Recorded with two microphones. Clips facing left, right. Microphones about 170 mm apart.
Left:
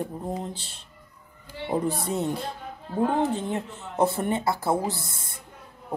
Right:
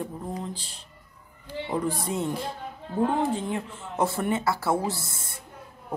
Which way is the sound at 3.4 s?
20° left (ahead or behind).